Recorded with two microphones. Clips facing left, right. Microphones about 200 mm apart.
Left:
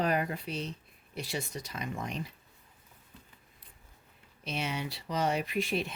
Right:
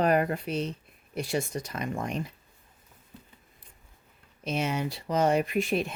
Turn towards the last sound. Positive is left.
turn(degrees=-50)  # may be behind; listen again after turning